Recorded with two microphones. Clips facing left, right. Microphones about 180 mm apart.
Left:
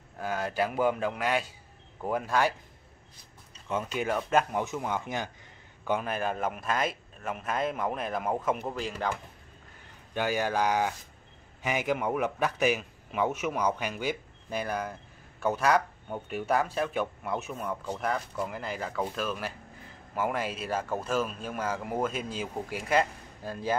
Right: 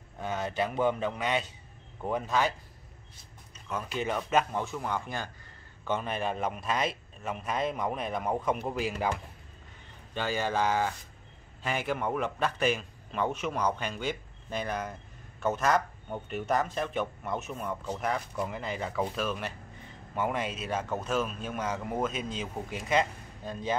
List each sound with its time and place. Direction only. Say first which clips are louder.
0.2 s a man's voice: left 1 dB; 5° left (ahead or behind)
3.9 s a man's voice: left 1 dB; 5° left (ahead or behind)
5.9 s a man's voice: left 1 dB; 5° left (ahead or behind)
10.1 s a man's voice: left 2 dB; 10° left (ahead or behind)